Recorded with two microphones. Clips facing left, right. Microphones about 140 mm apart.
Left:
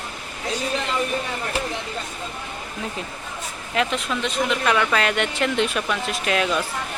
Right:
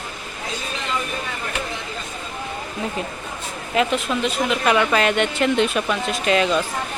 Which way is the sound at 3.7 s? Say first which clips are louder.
Right 3 dB; 5° right (ahead or behind).